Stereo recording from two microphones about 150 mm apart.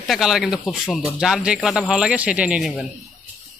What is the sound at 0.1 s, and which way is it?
Speech, centre (ahead or behind).